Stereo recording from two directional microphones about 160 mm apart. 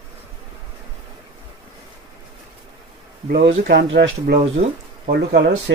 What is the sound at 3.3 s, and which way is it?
Speech, 75° right (ahead or behind).